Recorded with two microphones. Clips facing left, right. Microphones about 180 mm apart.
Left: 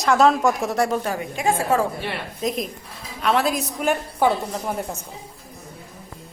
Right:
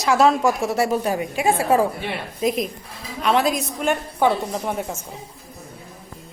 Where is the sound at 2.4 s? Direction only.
5° right (ahead or behind).